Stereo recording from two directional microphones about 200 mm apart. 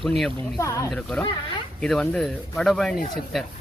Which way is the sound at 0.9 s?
5° left (ahead or behind).